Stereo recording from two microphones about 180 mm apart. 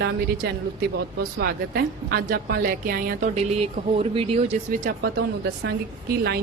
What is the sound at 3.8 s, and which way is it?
Speech, 30° right (ahead or behind).